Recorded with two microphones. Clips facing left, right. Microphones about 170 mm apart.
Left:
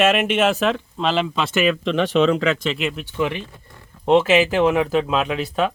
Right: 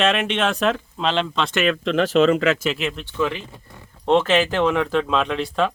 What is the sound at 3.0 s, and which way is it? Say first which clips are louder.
Speech: even; 15° left (ahead or behind).